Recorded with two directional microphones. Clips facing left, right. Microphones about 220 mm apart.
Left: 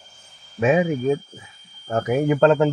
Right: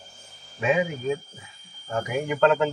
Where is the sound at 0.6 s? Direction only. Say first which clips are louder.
Left 6 dB; 45° left (ahead or behind).